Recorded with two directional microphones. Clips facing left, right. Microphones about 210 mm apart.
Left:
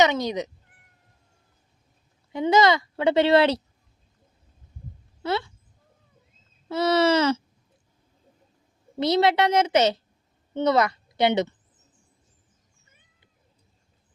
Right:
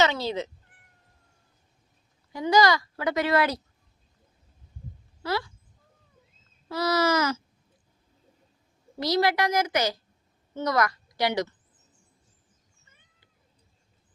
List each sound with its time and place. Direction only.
0.0 s speech: 15° left (ahead or behind)
2.3 s a woman's voice: 25° left (ahead or behind)
5.2 s speech: 25° left (ahead or behind)
6.7 s a woman's voice: 25° left (ahead or behind)
9.0 s a woman's voice: 25° left (ahead or behind)